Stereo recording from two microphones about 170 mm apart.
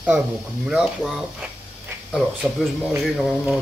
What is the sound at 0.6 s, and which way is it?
Speech, centre (ahead or behind).